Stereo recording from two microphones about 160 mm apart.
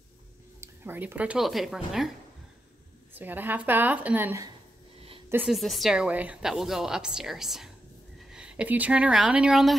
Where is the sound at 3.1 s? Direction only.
10° right (ahead or behind).